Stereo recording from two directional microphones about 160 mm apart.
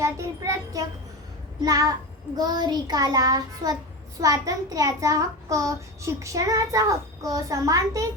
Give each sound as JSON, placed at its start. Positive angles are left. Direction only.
{"t": 0.0, "sound": "child singing", "side_deg": -20}
{"t": 1.6, "sound": "a child's voice", "side_deg": -20}